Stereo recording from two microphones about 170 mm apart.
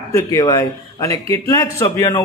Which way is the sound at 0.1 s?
20° left (ahead or behind).